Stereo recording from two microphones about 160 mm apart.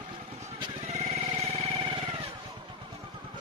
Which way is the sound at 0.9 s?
40° right (ahead or behind).